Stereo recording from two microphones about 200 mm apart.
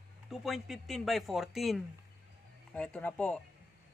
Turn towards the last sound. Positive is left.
turn(degrees=5)  # may be behind; listen again after turning